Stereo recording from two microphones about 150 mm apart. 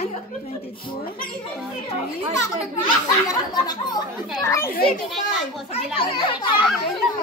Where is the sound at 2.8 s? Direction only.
25° left (ahead or behind).